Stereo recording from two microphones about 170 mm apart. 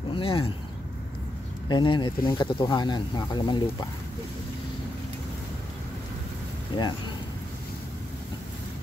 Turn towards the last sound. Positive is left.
turn(degrees=30)  # may be behind; listen again after turning